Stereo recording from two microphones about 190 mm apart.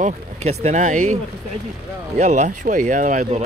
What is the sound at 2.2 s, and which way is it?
Speech, 40° right (ahead or behind).